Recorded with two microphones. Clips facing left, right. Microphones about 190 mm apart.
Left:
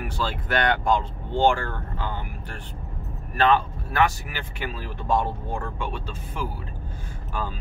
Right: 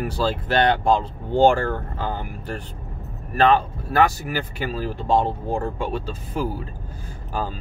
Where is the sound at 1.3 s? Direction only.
40° right (ahead or behind).